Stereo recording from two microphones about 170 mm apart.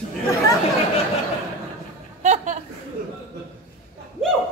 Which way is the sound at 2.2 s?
45° right (ahead or behind).